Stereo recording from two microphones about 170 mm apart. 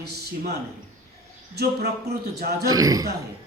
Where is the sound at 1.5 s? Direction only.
70° right (ahead or behind).